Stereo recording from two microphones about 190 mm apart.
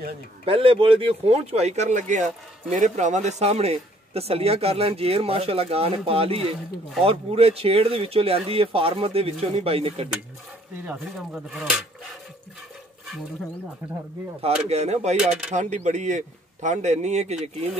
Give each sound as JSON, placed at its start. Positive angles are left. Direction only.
{"t": 0.5, "sound": "speech", "side_deg": -30}
{"t": 10.9, "sound": "speech", "side_deg": -5}
{"t": 14.4, "sound": "speech", "side_deg": -35}
{"t": 15.1, "sound": "speech", "side_deg": -5}
{"t": 15.5, "sound": "speech", "side_deg": -40}